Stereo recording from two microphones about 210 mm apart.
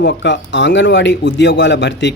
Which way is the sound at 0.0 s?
55° left (ahead or behind).